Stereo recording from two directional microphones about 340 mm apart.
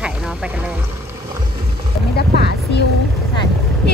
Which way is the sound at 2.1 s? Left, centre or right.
Left.